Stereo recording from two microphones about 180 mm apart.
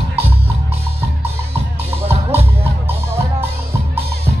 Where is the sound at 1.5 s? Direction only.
10° right (ahead or behind).